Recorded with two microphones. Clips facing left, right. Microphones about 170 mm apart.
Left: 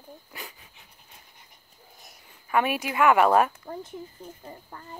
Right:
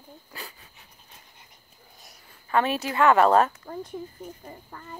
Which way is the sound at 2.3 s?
10° left (ahead or behind).